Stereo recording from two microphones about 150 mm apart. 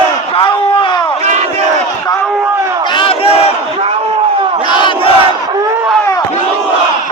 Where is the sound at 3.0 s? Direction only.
40° left (ahead or behind).